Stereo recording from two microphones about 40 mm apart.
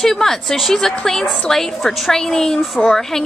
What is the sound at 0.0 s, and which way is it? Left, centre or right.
A woman's voice, centre.